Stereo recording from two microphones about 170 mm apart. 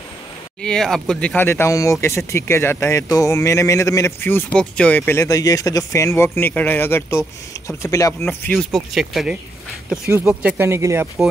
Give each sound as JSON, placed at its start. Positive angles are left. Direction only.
{"t": 0.6, "sound": "speech", "side_deg": 5}
{"t": 8.5, "sound": "speech", "side_deg": 0}